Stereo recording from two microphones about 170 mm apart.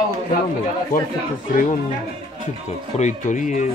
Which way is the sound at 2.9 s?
45° left (ahead or behind).